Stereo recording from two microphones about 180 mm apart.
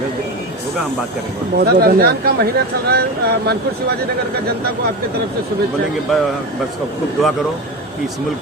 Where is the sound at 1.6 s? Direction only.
60° right (ahead or behind).